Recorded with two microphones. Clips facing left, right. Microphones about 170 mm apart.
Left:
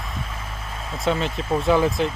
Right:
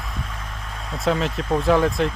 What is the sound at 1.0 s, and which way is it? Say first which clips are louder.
Speech: right 1 dB; centre (ahead or behind).